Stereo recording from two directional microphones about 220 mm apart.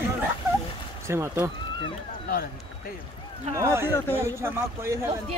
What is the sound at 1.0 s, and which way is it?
Speech, 10° right (ahead or behind).